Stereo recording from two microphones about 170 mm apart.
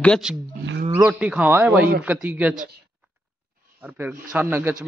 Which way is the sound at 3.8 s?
10° right (ahead or behind).